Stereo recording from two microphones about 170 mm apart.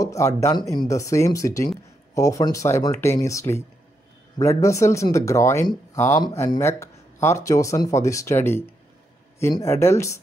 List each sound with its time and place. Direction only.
0.0 s speech: 15° left (ahead or behind)